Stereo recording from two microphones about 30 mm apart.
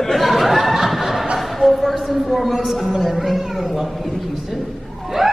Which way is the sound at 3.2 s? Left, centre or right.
Centre.